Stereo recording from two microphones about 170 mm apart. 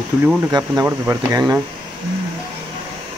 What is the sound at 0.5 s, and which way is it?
Speech, 20° right (ahead or behind).